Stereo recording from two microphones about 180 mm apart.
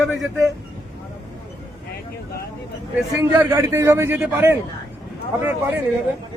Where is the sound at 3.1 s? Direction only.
15° right (ahead or behind).